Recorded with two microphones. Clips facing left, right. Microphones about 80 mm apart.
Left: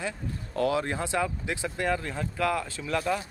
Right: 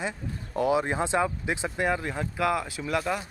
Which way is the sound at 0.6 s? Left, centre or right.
Centre.